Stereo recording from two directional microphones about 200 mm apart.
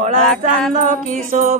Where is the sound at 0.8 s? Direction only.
40° right (ahead or behind).